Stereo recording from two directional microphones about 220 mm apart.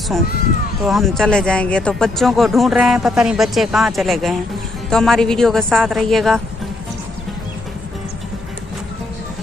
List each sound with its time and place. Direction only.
0.8 s speech: centre (ahead or behind)